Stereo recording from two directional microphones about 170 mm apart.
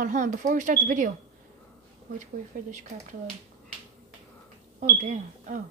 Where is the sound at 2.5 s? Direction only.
50° right (ahead or behind).